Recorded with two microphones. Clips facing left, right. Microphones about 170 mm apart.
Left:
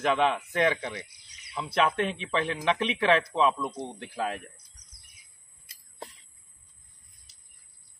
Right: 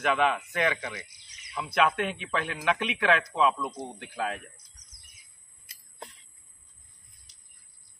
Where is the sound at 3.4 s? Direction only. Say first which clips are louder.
Even; 5° right (ahead or behind).